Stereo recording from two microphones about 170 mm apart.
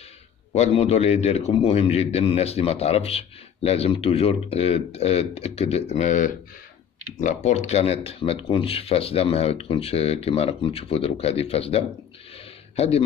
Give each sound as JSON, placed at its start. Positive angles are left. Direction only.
{"t": 0.5, "sound": "a man's voice", "side_deg": 40}